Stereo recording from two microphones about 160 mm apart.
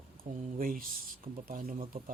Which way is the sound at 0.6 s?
60° right (ahead or behind).